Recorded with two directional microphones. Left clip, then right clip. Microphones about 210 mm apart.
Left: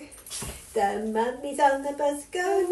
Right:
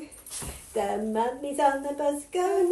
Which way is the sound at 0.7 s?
30° right (ahead or behind).